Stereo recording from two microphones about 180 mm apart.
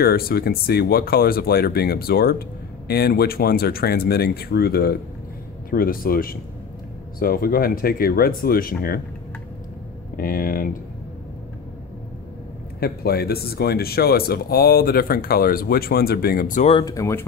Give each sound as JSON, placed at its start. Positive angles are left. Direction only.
{"t": 0.0, "sound": "speech", "side_deg": 60}
{"t": 10.1, "sound": "speech", "side_deg": 55}
{"t": 12.8, "sound": "speech", "side_deg": 60}
{"t": 16.7, "sound": "speech", "side_deg": 20}